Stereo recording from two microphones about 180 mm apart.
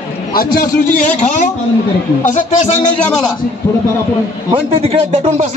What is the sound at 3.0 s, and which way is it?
Speech, 5° left (ahead or behind).